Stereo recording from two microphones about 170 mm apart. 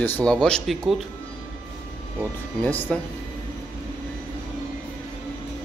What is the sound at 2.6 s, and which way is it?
Speech, 5° left (ahead or behind).